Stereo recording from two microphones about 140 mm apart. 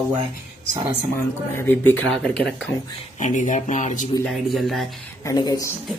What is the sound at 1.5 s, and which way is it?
Speech, 15° left (ahead or behind).